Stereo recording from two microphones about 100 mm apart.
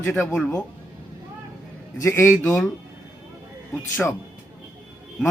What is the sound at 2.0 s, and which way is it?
Speech, 25° left (ahead or behind).